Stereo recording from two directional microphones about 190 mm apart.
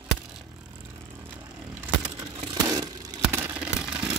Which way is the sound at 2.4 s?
20° right (ahead or behind).